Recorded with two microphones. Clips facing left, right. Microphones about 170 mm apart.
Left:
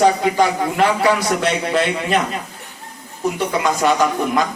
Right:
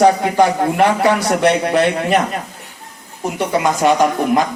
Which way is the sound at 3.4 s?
50° right (ahead or behind).